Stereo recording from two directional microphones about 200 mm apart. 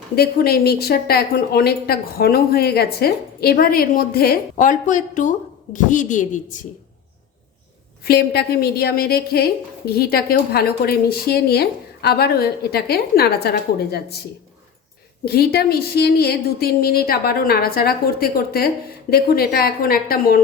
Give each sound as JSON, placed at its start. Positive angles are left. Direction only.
{"t": 0.2, "sound": "a woman's voice", "side_deg": 50}
{"t": 8.0, "sound": "a woman's voice", "side_deg": 50}
{"t": 15.2, "sound": "a woman's voice", "side_deg": 50}